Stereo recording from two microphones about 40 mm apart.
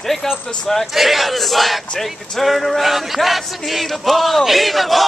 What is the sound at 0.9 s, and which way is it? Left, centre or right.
Speech, centre.